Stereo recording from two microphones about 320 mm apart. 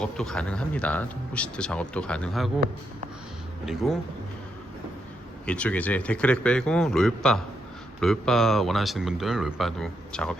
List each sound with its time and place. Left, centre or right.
0.0 s speech: centre
3.7 s speech: centre
5.5 s speech: centre